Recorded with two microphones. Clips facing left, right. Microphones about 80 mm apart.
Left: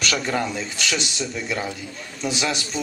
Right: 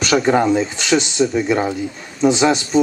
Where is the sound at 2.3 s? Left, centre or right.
Right.